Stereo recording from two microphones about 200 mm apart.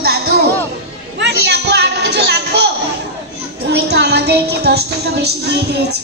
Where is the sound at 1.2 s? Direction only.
55° right (ahead or behind).